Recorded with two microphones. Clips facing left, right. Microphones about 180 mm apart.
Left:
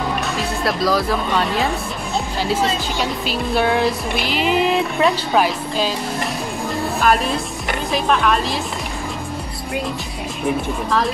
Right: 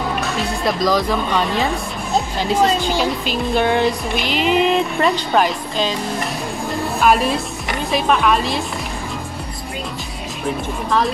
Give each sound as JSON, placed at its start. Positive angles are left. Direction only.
{"t": 0.7, "sound": "music", "side_deg": 5}
{"t": 3.0, "sound": "music", "side_deg": 5}
{"t": 7.0, "sound": "music", "side_deg": 0}